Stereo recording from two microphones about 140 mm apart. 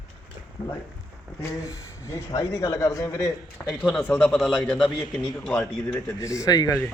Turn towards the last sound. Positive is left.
turn(degrees=25)  # may be behind; listen again after turning